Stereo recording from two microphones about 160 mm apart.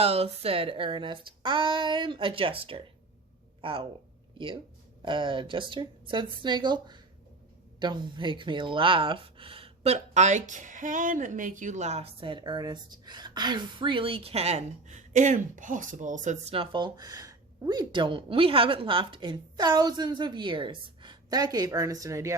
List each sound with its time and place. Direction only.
0.0 s speech: 40° right (ahead or behind)
5.0 s speech: 30° right (ahead or behind)